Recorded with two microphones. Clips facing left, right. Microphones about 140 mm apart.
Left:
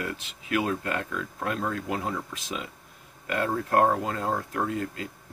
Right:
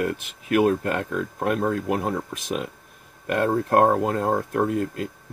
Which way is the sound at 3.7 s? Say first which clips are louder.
Right 3 dB; 55° right (ahead or behind).